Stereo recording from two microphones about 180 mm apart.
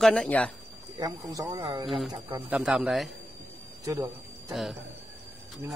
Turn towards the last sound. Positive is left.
turn(degrees=0)  # may be behind; listen again after turning